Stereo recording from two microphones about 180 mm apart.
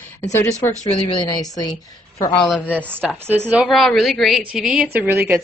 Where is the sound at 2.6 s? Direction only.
10° left (ahead or behind).